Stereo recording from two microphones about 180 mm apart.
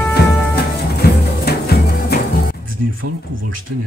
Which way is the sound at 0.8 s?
60° left (ahead or behind).